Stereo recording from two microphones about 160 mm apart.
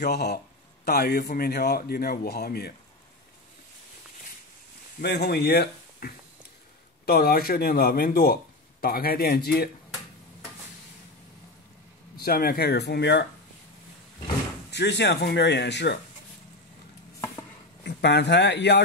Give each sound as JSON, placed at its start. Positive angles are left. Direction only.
{"t": 0.0, "sound": "speech", "side_deg": 90}
{"t": 5.0, "sound": "speech", "side_deg": 90}
{"t": 12.2, "sound": "speech", "side_deg": 70}
{"t": 14.7, "sound": "speech", "side_deg": 90}
{"t": 17.8, "sound": "speech", "side_deg": 90}